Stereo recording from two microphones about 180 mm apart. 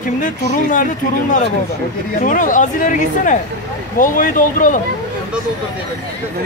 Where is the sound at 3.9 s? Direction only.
45° left (ahead or behind).